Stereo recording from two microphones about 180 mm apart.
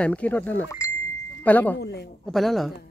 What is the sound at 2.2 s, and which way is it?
Speech, centre (ahead or behind).